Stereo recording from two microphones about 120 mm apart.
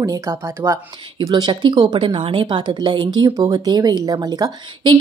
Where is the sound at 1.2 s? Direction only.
40° right (ahead or behind).